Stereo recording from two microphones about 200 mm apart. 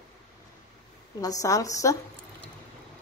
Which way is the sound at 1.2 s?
15° left (ahead or behind).